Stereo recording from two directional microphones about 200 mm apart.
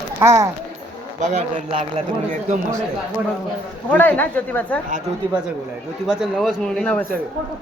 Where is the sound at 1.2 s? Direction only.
35° right (ahead or behind).